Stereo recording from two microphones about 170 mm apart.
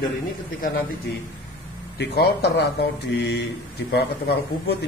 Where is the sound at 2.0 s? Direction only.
70° left (ahead or behind).